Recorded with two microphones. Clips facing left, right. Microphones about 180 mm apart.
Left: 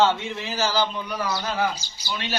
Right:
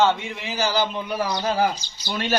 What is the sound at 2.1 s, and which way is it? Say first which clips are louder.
Speech: right 4 dB; 45° right (ahead or behind).